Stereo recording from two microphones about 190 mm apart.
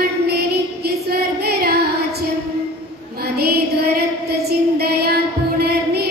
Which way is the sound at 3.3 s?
55° right (ahead or behind).